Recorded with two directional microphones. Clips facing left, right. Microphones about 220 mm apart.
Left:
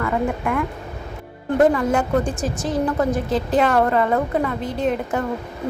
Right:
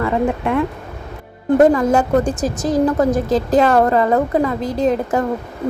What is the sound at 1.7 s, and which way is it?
A woman's voice, 40° right (ahead or behind).